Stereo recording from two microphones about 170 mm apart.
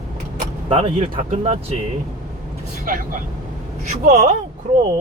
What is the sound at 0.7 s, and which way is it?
Speech, 35° right (ahead or behind).